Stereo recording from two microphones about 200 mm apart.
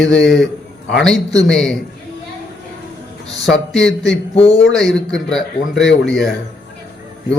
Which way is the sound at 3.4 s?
Centre (ahead or behind).